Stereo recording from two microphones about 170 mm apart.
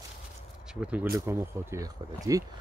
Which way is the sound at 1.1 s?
20° right (ahead or behind).